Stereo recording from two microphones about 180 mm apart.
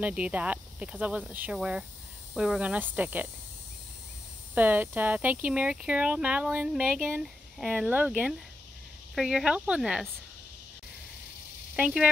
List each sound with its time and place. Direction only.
0.0 s speech: 5° right (ahead or behind)
4.6 s speech: 10° right (ahead or behind)
11.7 s speech: 5° right (ahead or behind)